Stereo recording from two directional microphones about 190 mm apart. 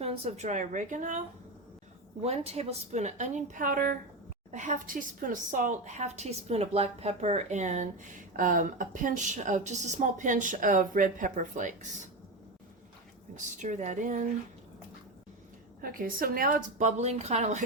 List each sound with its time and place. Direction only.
0.0 s a woman's voice: 35° right (ahead or behind)
2.2 s a woman's voice: 35° right (ahead or behind)
13.3 s a woman's voice: 40° right (ahead or behind)
15.8 s a woman's voice: 50° right (ahead or behind)